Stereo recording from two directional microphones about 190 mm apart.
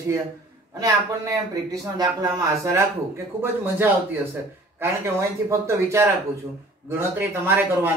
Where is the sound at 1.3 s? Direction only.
20° right (ahead or behind).